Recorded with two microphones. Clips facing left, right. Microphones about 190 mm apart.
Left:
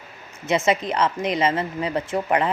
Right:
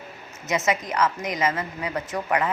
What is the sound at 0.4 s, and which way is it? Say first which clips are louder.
A woman's voice: left 4 dB; 30° left (ahead or behind).